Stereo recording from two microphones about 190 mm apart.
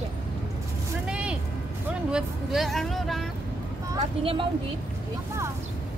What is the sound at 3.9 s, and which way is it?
Speech, 25° right (ahead or behind).